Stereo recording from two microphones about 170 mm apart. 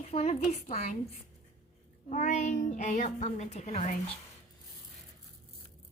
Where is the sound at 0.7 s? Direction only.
50° left (ahead or behind).